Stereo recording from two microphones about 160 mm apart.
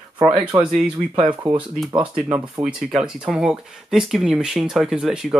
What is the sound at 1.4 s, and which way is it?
Speech, 30° right (ahead or behind).